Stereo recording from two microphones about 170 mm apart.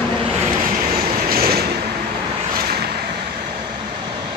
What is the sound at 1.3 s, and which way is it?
Vehicle, 65° right (ahead or behind).